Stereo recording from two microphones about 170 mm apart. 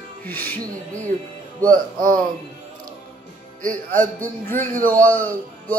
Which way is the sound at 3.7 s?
10° left (ahead or behind).